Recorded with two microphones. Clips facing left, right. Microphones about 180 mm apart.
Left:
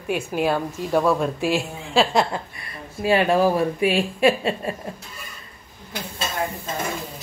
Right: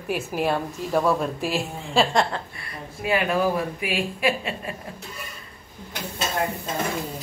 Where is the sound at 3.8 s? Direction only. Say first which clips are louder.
Left 6 dB; 30° left (ahead or behind).